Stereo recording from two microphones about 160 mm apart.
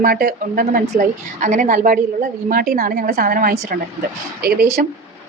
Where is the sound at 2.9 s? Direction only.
80° right; by 3.8 s 65° right (ahead or behind).